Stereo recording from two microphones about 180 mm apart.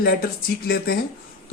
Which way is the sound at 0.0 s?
55° left (ahead or behind).